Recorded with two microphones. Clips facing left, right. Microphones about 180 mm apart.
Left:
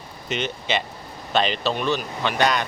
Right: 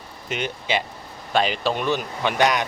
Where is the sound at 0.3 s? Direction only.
10° right (ahead or behind).